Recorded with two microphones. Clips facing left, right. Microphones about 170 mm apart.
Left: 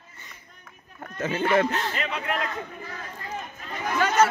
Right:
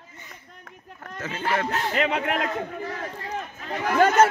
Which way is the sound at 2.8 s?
70° right (ahead or behind).